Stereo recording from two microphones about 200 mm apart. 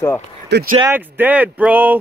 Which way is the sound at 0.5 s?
50° right (ahead or behind).